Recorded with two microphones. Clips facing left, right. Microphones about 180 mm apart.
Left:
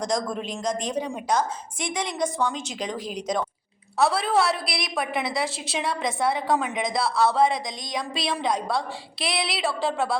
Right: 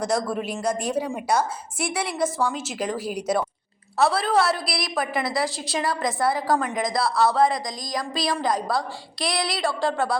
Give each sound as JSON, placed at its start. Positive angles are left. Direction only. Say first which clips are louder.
{"t": 0.0, "sound": "a woman's voice", "louder": "right 2 dB", "side_deg": -5}